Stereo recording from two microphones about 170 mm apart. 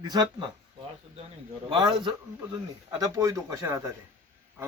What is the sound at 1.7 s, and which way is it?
A man's voice, 25° right (ahead or behind).